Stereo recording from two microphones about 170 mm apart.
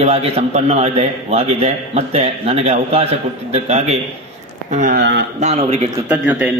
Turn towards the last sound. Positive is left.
turn(degrees=-10)  # may be behind; listen again after turning